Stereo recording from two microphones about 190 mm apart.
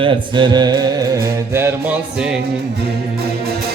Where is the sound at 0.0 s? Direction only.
25° right (ahead or behind).